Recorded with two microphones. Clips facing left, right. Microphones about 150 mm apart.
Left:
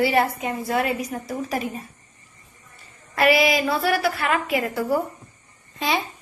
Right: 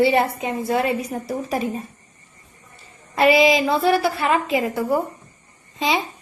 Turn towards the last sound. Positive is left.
turn(degrees=-15)  # may be behind; listen again after turning